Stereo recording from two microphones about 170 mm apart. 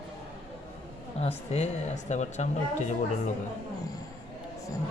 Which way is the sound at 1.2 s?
40° left (ahead or behind).